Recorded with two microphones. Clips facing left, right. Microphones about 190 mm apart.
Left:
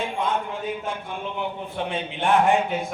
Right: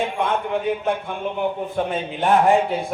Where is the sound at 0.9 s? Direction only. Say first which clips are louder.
Right 7 dB; 55° right (ahead or behind).